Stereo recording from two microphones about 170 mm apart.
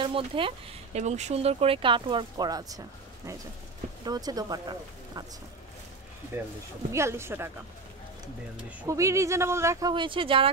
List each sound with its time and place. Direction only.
0.0 s speech: 30° right (ahead or behind)
4.0 s speech: 25° right (ahead or behind)
6.9 s speech: 15° right (ahead or behind)
8.8 s speech: 20° right (ahead or behind)